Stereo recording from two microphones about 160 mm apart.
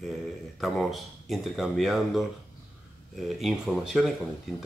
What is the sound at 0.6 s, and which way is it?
Speech, centre (ahead or behind).